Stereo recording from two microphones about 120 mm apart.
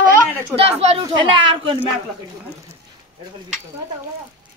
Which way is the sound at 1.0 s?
40° right (ahead or behind).